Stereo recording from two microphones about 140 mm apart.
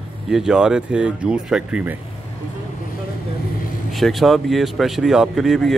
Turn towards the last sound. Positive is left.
turn(degrees=0)  # may be behind; listen again after turning